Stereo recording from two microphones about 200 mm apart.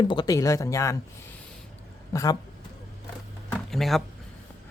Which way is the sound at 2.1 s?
15° left (ahead or behind).